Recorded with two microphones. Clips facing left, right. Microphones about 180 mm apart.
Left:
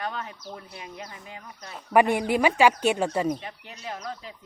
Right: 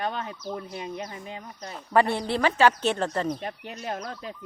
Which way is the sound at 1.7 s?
15° left (ahead or behind).